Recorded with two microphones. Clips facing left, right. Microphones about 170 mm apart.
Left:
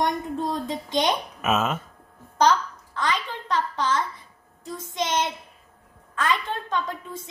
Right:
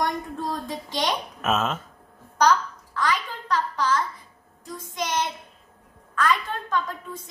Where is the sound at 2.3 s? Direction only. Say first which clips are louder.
Even; 25° left (ahead or behind).